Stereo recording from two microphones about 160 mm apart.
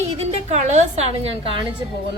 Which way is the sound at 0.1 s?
40° right (ahead or behind).